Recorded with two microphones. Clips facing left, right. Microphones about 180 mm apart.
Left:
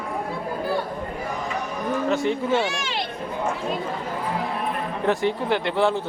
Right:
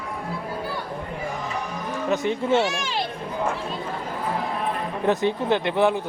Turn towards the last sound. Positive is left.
turn(degrees=-20)  # may be behind; listen again after turning